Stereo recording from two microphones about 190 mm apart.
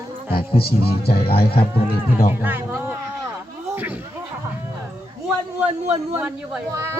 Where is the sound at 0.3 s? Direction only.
30° left (ahead or behind).